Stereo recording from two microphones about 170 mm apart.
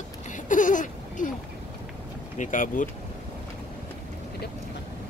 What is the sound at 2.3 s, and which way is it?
Speech, 50° left (ahead or behind).